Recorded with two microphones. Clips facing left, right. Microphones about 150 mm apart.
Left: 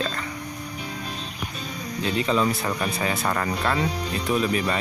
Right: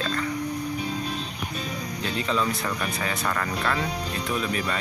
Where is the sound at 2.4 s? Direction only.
20° left (ahead or behind).